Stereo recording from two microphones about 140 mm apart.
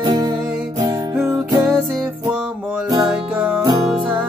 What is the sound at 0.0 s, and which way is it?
Music, 30° right (ahead or behind).